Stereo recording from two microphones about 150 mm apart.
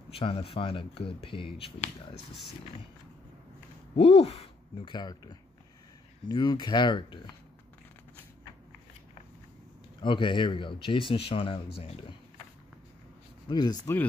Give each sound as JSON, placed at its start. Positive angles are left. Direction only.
{"t": 0.1, "sound": "speech", "side_deg": 40}
{"t": 3.9, "sound": "speech", "side_deg": 40}
{"t": 10.0, "sound": "speech", "side_deg": 35}
{"t": 13.5, "sound": "speech", "side_deg": 30}